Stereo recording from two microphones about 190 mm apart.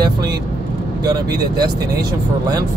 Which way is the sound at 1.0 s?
20° right (ahead or behind).